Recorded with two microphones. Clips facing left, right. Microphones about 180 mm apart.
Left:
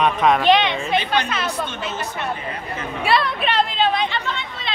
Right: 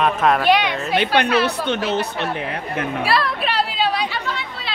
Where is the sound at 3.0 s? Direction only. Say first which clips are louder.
Left 3 dB; centre (ahead or behind).